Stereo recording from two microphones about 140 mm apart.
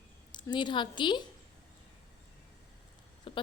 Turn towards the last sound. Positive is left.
turn(degrees=35)  # may be behind; listen again after turning